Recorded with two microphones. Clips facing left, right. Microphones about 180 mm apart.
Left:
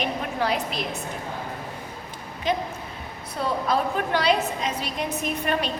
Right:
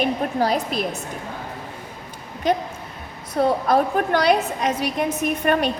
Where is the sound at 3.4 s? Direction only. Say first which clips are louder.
Right 6 dB; 50° right (ahead or behind).